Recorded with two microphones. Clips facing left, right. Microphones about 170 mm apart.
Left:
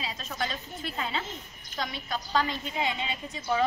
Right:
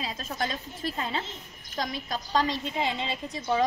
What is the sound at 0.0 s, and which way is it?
A woman's voice, 45° right (ahead or behind).